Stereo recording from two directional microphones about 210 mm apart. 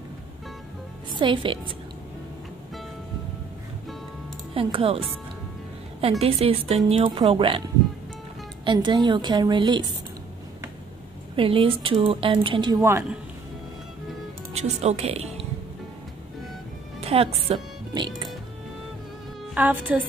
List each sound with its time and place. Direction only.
1.1 s speech: 25° right (ahead or behind)
4.6 s speech: 25° right (ahead or behind)
11.3 s speech: 25° right (ahead or behind)
14.5 s speech: 30° right (ahead or behind)
17.0 s a woman's voice: 30° right (ahead or behind)
19.5 s a woman's voice: 5° right (ahead or behind)